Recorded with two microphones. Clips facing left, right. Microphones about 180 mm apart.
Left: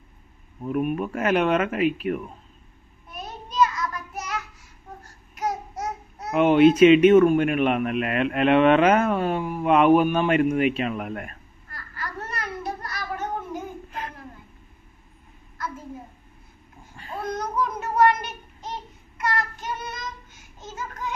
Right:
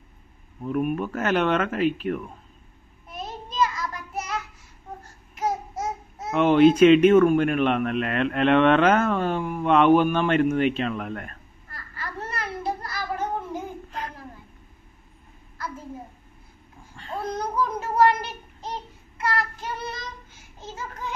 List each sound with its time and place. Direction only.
0.6 s a man's voice: 5° left (ahead or behind)
3.2 s child singing: 25° right (ahead or behind)
5.3 s babbling: 25° right (ahead or behind)
6.3 s a man's voice: 5° left (ahead or behind)
11.7 s a sound: 30° right (ahead or behind)
17.3 s child singing: 30° right (ahead or behind)
20.6 s a sound: 30° right (ahead or behind)